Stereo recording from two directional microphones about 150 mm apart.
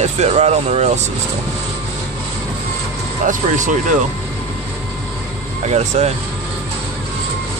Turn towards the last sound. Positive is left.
turn(degrees=-45)  # may be behind; listen again after turning